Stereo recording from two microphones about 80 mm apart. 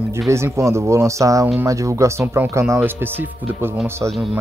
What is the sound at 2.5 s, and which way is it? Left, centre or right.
Speech, right.